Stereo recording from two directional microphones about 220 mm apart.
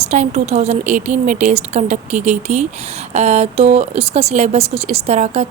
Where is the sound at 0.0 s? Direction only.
30° right (ahead or behind).